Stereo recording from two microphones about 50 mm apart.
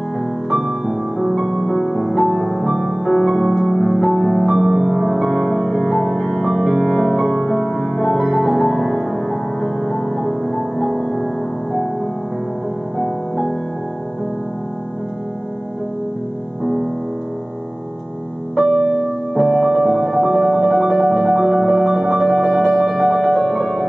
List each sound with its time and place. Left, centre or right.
0.5 s music: centre
2.7 s music: centre
3.1 s music: centre
4.5 s music: centre
9.8 s music: centre
10.4 s music: centre
13.0 s music: centre
18.6 s music: centre
19.3 s music: centre